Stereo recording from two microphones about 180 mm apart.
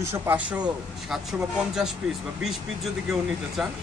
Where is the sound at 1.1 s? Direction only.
5° right (ahead or behind).